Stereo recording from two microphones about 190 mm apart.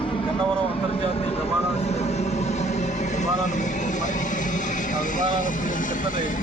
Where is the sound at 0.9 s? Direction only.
30° left (ahead or behind).